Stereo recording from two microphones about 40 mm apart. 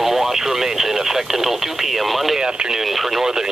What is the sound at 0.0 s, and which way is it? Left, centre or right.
Radio, centre.